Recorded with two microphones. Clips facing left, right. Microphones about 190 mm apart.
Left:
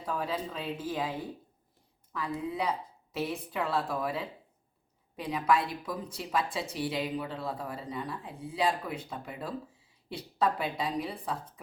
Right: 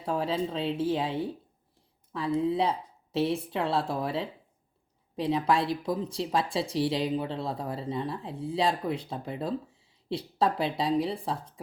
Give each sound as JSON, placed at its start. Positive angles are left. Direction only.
{"t": 0.0, "sound": "speech", "side_deg": -30}